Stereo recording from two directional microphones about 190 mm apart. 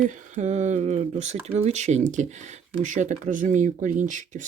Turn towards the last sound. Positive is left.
turn(degrees=-40)  # may be behind; listen again after turning